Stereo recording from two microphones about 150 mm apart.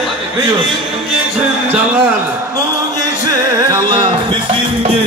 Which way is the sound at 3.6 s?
30° right (ahead or behind).